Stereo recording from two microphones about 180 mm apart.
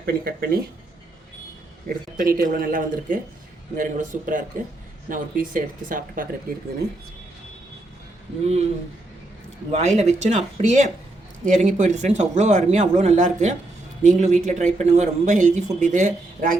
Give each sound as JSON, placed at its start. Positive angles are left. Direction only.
{"t": 0.0, "sound": "speech", "side_deg": -60}
{"t": 1.9, "sound": "speech", "side_deg": -50}
{"t": 9.7, "sound": "speech", "side_deg": -40}